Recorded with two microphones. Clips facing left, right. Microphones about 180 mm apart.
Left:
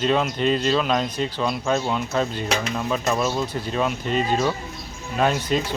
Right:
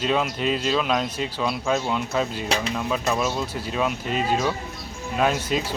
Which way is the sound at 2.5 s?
35° right (ahead or behind).